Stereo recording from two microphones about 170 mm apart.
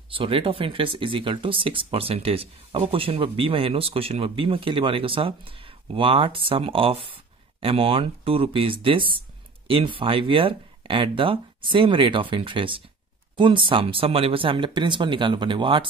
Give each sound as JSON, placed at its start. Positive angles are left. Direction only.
{"t": 0.1, "sound": "speech", "side_deg": -30}